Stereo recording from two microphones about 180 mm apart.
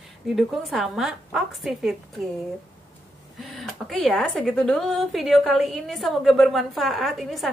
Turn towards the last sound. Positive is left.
turn(degrees=0)  # may be behind; listen again after turning